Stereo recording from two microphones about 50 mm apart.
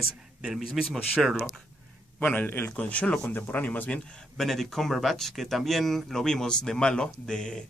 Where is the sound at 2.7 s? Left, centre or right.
Left.